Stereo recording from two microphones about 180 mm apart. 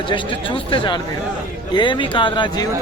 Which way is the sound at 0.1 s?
30° left (ahead or behind).